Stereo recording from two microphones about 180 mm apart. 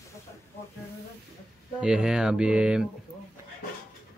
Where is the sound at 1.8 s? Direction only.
5° right (ahead or behind).